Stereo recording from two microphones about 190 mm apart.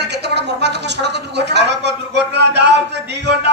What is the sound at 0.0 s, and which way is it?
Speech, 65° right (ahead or behind).